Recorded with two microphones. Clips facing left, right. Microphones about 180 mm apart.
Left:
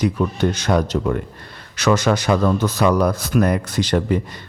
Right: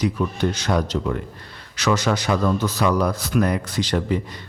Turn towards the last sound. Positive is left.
turn(degrees=50)  # may be behind; listen again after turning